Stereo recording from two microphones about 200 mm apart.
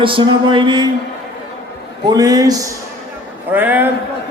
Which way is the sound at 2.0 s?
20° right (ahead or behind).